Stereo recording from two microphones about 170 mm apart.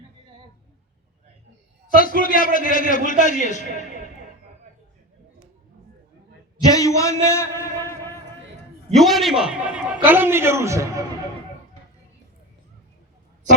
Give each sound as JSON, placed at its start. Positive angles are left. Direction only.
{"t": 2.0, "sound": "a man's voice", "side_deg": 55}
{"t": 6.7, "sound": "a sound", "side_deg": 20}
{"t": 9.0, "sound": "a man's voice", "side_deg": 0}